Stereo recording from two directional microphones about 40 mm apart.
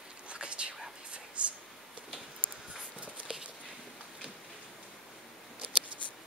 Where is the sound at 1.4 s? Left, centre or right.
Right.